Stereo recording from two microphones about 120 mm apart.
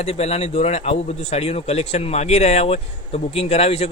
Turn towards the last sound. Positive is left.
turn(degrees=60)  # may be behind; listen again after turning